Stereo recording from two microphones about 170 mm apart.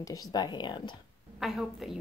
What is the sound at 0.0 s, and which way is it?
Speech, 20° left (ahead or behind).